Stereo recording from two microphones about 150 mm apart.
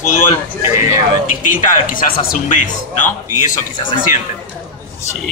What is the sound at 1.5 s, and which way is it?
A man's voice, 60° left (ahead or behind).